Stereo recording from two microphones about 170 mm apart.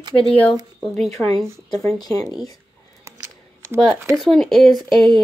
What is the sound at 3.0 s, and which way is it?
Scissors, 15° right (ahead or behind).